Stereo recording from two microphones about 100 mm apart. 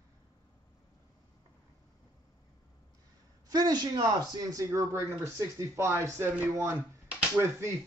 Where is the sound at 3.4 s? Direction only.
40° right (ahead or behind).